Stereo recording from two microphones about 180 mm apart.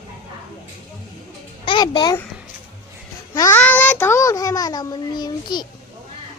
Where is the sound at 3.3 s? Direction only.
15° left (ahead or behind).